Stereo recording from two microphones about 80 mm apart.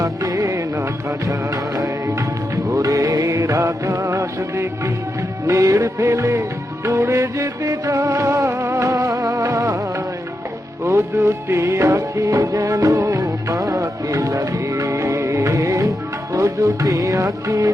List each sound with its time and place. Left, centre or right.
0.0 s music: right
10.8 s music: right